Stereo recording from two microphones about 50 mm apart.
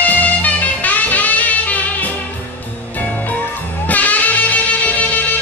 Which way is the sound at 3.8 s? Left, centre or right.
Left.